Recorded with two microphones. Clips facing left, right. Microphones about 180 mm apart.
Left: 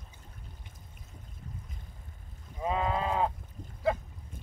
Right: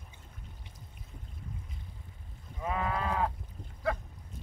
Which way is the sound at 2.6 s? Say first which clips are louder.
Left 3 dB; 20° left (ahead or behind).